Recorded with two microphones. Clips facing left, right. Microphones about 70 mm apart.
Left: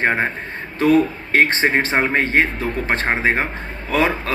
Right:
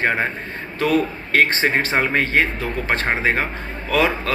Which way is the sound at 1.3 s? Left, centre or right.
Left.